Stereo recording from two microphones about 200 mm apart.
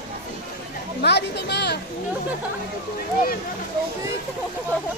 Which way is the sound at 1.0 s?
55° left (ahead or behind).